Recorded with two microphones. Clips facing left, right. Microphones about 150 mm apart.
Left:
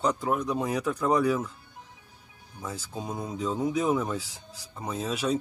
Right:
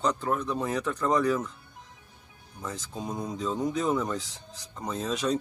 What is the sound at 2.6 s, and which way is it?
Speech, 10° left (ahead or behind).